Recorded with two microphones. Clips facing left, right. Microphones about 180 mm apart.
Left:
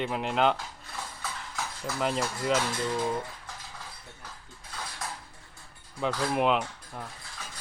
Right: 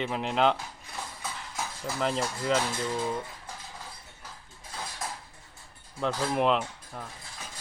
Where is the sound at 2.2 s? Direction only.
5° left (ahead or behind).